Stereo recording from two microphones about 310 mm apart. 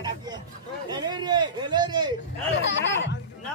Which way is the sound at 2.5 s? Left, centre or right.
Left.